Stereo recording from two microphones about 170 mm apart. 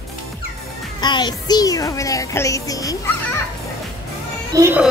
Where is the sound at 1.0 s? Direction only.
25° left (ahead or behind).